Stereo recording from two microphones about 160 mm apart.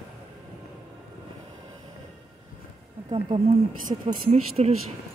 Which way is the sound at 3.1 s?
35° right (ahead or behind).